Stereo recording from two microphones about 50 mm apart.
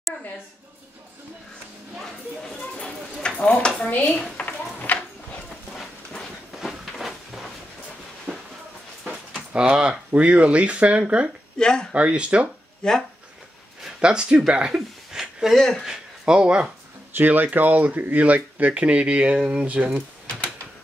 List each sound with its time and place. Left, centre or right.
2.5 s a sound: centre
2.8 s a sound: left
6.6 s a sound: centre
9.5 s speech: centre
11.5 s speech: centre
11.9 s speech: right
12.8 s speech: centre
14.0 s speech: centre
15.1 s a sound: centre
15.5 s speech: centre
15.8 s speech: centre
17.1 s speech: right